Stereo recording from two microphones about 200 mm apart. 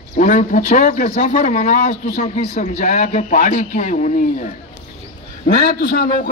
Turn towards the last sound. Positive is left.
turn(degrees=45)  # may be behind; listen again after turning